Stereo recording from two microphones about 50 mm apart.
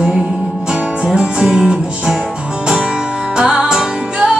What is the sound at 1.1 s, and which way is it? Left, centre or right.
Music, centre.